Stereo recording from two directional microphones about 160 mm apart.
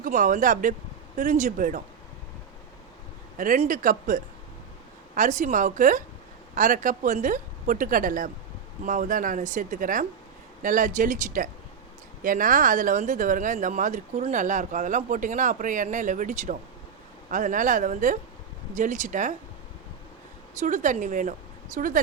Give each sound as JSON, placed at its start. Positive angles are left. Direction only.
{"t": 0.0, "sound": "a woman's voice", "side_deg": -55}
{"t": 3.3, "sound": "a woman's voice", "side_deg": -55}
{"t": 20.6, "sound": "a woman's voice", "side_deg": -50}